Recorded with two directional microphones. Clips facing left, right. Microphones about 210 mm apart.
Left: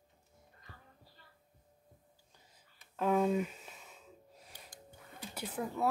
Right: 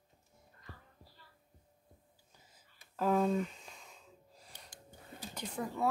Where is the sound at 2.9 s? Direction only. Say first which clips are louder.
Even; 5° left (ahead or behind).